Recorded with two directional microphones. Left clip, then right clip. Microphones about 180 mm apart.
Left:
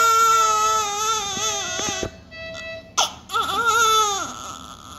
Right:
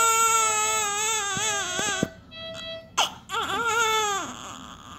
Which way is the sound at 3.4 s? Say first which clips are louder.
Left 6 dB; 35° right (ahead or behind).